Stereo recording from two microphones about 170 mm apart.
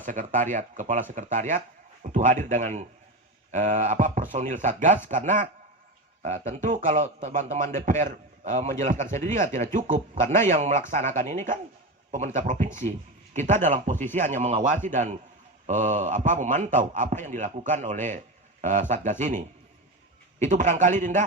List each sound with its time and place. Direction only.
0.0 s a man's voice: 50° right (ahead or behind)